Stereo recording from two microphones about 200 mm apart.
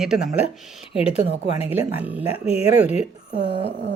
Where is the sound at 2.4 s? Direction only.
5° right (ahead or behind).